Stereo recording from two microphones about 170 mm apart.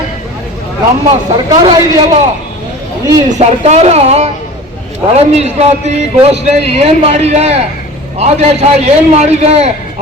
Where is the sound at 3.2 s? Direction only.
40° right (ahead or behind).